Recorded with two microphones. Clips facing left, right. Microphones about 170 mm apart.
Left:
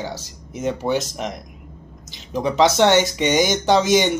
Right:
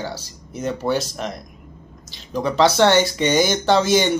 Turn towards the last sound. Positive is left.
turn(degrees=15)  # may be behind; listen again after turning